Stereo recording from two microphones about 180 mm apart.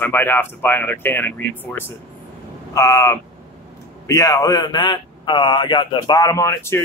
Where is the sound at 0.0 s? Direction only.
10° left (ahead or behind).